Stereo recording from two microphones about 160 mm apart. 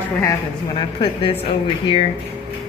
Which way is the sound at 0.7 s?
35° left (ahead or behind).